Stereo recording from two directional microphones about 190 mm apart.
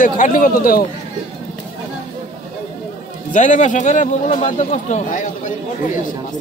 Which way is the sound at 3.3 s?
40° left (ahead or behind).